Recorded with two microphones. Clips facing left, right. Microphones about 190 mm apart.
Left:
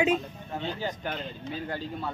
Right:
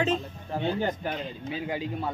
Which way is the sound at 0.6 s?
55° right (ahead or behind).